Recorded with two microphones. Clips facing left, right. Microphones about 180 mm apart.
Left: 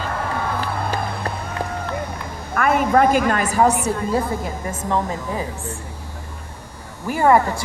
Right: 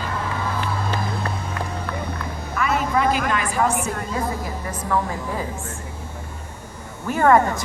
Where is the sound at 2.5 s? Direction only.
55° left (ahead or behind).